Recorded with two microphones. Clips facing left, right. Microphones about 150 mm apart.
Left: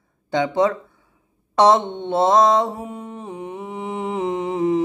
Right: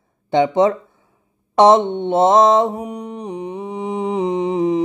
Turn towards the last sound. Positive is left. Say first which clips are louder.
# right 3 dB
turn(degrees=-20)  # may be behind; listen again after turning